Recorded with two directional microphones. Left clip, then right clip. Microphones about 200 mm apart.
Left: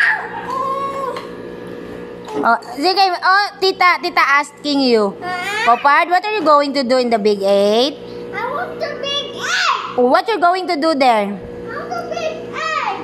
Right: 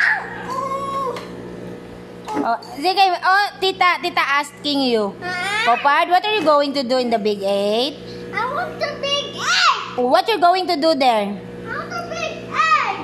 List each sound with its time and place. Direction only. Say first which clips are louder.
2.4 s a woman's voice: left 6 dB; 20° left (ahead or behind)
5.2 s a child's voice: left 1 dB; 15° right (ahead or behind)
5.7 s a woman's voice: left 4 dB; 20° left (ahead or behind)
8.4 s music: even; 10° right (ahead or behind)
10.0 s a woman's voice: left 1 dB; 10° left (ahead or behind)
12.1 s music: left 3 dB; centre (ahead or behind)